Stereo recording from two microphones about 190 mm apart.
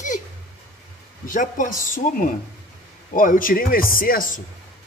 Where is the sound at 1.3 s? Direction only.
45° left (ahead or behind).